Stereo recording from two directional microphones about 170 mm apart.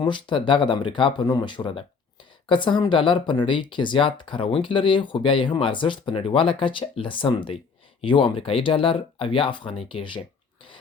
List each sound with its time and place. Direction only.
0.0 s speech: 30° left (ahead or behind)